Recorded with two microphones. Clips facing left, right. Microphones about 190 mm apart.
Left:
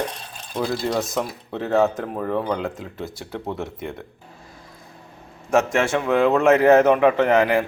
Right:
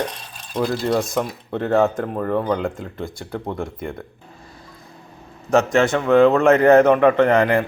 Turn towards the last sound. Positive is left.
turn(degrees=5)  # may be behind; listen again after turning